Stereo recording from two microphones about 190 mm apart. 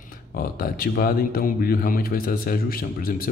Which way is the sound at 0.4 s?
50° left (ahead or behind).